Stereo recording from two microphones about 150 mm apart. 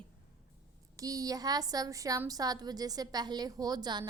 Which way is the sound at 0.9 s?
25° right (ahead or behind).